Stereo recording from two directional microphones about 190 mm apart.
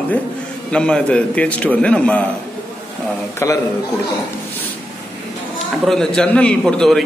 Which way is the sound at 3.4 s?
15° left (ahead or behind).